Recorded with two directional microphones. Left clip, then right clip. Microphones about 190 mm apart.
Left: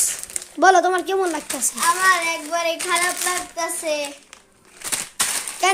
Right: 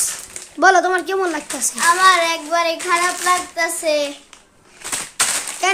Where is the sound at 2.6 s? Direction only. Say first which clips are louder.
Right 3 dB; 10° right (ahead or behind).